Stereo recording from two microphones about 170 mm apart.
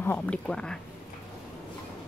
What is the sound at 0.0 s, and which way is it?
Speech, 10° left (ahead or behind).